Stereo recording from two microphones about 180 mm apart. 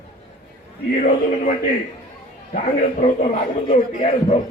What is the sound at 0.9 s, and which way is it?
Speech, 50° left (ahead or behind).